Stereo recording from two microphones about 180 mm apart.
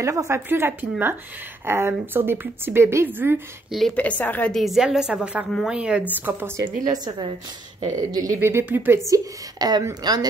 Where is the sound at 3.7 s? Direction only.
5° left (ahead or behind).